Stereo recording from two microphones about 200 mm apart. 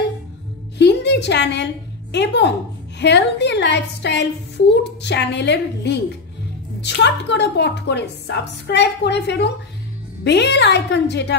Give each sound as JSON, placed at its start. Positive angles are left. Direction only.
{"t": 0.7, "sound": "a woman's voice", "side_deg": 55}